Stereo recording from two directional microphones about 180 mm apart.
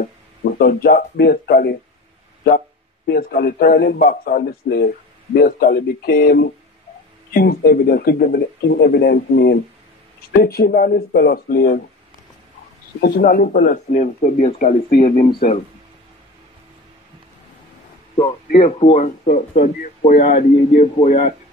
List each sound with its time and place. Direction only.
0.0 s speech: 55° left (ahead or behind)
3.1 s a man's voice: 60° left (ahead or behind)
4.0 s a man's voice: 50° left (ahead or behind)
13.0 s speech: 55° left (ahead or behind)
18.8 s speech: 35° left (ahead or behind)
20.1 s speech: 55° left (ahead or behind)
20.8 s speech: 40° left (ahead or behind)